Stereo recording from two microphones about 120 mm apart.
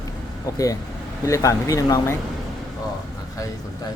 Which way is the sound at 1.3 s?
25° left (ahead or behind).